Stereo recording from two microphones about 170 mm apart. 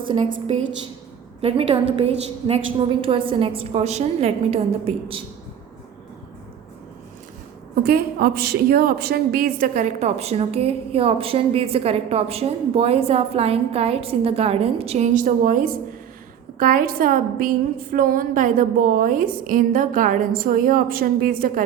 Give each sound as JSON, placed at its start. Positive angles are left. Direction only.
{"t": 1.4, "sound": "a woman's voice", "side_deg": -35}
{"t": 7.9, "sound": "a woman's voice", "side_deg": -65}